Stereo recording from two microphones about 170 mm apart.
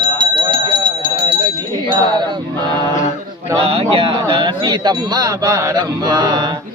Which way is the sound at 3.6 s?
35° right (ahead or behind).